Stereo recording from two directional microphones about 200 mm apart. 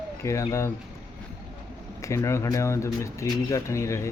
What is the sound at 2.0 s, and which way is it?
Speech, 15° left (ahead or behind).